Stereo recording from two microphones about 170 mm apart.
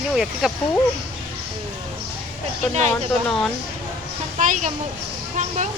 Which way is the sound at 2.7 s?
40° right (ahead or behind).